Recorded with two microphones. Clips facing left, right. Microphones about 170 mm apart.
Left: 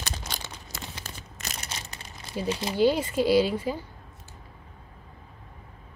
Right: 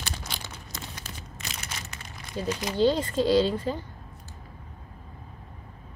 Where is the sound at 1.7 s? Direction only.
30° left (ahead or behind).